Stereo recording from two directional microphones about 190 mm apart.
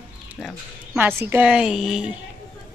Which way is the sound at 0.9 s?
10° right (ahead or behind).